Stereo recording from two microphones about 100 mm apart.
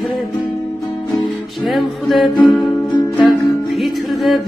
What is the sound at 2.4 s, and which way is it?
Music, 15° left (ahead or behind).